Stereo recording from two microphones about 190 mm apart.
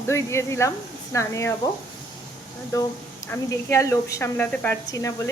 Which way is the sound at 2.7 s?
15° left (ahead or behind).